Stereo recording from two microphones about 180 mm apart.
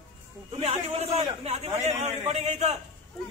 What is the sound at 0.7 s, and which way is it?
A man's voice, 35° right (ahead or behind).